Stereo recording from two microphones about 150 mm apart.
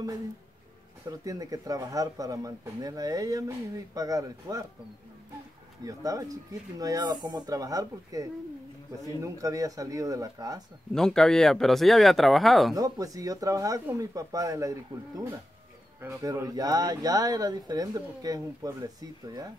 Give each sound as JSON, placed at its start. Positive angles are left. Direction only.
{"t": 1.2, "sound": "speech", "side_deg": -25}
{"t": 5.9, "sound": "speech", "side_deg": -20}
{"t": 10.9, "sound": "speech", "side_deg": 5}
{"t": 12.7, "sound": "speech", "side_deg": -25}